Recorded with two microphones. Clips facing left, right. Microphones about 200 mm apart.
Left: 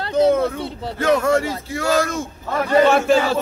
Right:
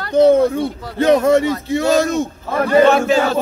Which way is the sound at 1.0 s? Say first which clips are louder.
Right 5 dB; 20° right (ahead or behind).